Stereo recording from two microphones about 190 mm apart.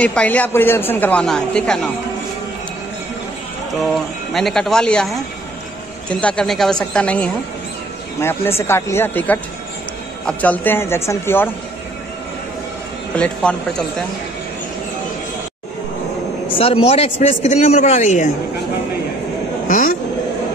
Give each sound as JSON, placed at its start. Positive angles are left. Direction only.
{"t": 0.0, "sound": "a man's voice", "side_deg": 5}
{"t": 3.9, "sound": "a man's voice", "side_deg": 0}
{"t": 13.1, "sound": "speech", "side_deg": 5}
{"t": 16.5, "sound": "a man's voice", "side_deg": 30}